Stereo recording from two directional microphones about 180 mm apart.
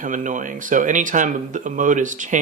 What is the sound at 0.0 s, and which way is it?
Speech, 45° right (ahead or behind).